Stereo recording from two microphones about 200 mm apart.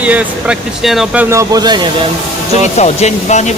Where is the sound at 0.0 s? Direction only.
5° right (ahead or behind).